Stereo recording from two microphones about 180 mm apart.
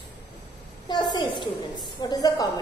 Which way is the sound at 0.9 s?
25° left (ahead or behind).